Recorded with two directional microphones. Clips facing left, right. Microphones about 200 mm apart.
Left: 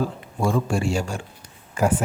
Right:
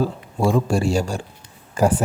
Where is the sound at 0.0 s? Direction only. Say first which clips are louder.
Right 3 dB; 35° right (ahead or behind).